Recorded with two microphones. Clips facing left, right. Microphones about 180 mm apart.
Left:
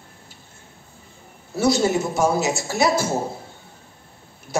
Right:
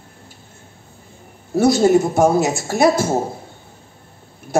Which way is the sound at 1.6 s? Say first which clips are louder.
Right 6 dB; 55° right (ahead or behind).